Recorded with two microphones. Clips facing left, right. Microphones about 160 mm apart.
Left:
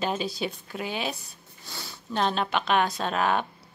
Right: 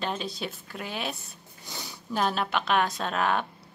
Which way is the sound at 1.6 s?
15° right (ahead or behind).